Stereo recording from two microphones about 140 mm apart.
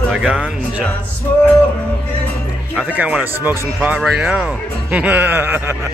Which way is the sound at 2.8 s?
10° right (ahead or behind).